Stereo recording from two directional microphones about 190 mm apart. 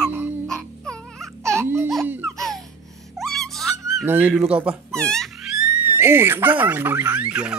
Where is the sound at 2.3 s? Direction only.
Centre (ahead or behind).